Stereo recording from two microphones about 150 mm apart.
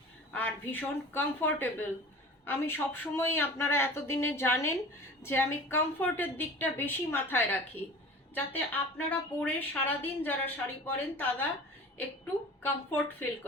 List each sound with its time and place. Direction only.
0.3 s speech: 10° left (ahead or behind)
8.5 s speech: 10° left (ahead or behind)